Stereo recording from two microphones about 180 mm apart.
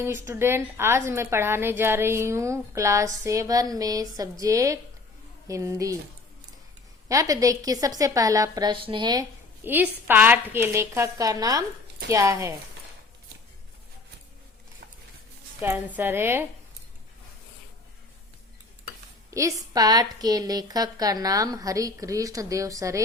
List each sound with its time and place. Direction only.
0.0 s a woman's voice: 15° right (ahead or behind)
7.1 s a woman's voice: 20° right (ahead or behind)
9.6 s a woman's voice: 10° right (ahead or behind)
16.0 s a woman's voice: 10° right (ahead or behind)
19.3 s a woman's voice: 15° right (ahead or behind)